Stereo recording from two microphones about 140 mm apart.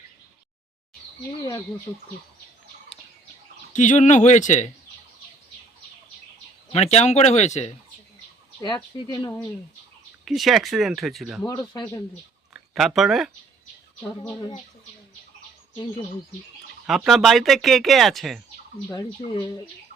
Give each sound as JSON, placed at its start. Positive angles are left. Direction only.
{"t": 1.4, "sound": "speech", "side_deg": 25}
{"t": 3.7, "sound": "speech", "side_deg": 60}
{"t": 6.7, "sound": "speech", "side_deg": 50}
{"t": 8.6, "sound": "speech", "side_deg": 30}
{"t": 10.2, "sound": "speech", "side_deg": 0}
{"t": 11.4, "sound": "speech", "side_deg": 30}
{"t": 12.7, "sound": "speech", "side_deg": 0}
{"t": 16.8, "sound": "speech", "side_deg": -5}
{"t": 18.9, "sound": "speech", "side_deg": 35}